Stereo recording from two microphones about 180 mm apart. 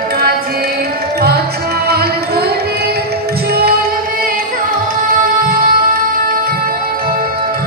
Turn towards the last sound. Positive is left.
turn(degrees=-50)  # may be behind; listen again after turning